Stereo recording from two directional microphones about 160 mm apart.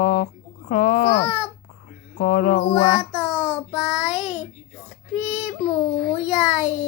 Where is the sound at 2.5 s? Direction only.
40° left (ahead or behind).